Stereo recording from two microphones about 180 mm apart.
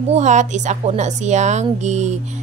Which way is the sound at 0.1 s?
40° right (ahead or behind).